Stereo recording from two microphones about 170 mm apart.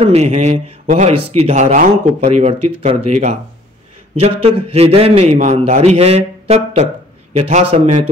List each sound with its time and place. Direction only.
0.0 s speech: 40° right (ahead or behind)